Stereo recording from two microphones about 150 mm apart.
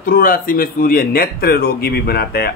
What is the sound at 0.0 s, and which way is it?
Speech, 70° left (ahead or behind).